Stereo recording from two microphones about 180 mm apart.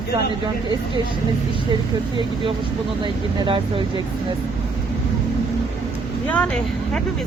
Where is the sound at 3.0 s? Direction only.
30° right (ahead or behind).